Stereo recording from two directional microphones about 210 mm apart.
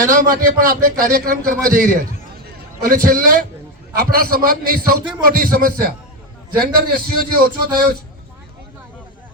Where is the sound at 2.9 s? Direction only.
45° right (ahead or behind).